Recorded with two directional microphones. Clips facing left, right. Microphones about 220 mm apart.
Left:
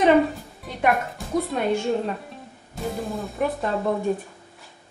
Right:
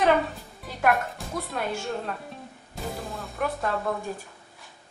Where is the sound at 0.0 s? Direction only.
Centre (ahead or behind).